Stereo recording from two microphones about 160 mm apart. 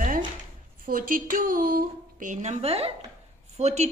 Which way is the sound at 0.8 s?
60° right (ahead or behind).